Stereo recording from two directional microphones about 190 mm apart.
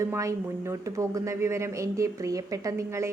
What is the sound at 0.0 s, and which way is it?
A woman's voice, 15° right (ahead or behind).